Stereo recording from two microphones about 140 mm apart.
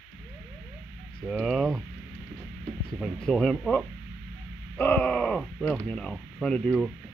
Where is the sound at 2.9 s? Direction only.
5° left (ahead or behind).